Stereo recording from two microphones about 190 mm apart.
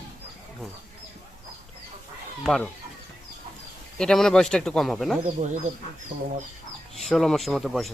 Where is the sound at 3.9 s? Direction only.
5° left (ahead or behind).